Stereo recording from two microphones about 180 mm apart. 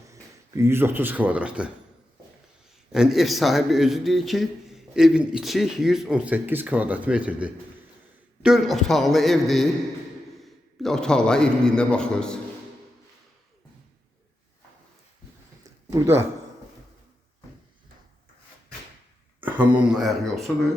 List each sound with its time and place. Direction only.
0.1 s speech: 15° right (ahead or behind)
2.9 s a man's voice: centre (ahead or behind)
15.6 s a sound: 15° right (ahead or behind)
19.4 s speech: 10° right (ahead or behind)